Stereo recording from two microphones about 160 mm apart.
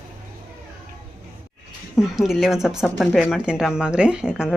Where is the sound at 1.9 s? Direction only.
Centre (ahead or behind).